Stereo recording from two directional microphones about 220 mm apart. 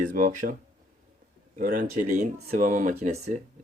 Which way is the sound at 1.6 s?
35° right (ahead or behind).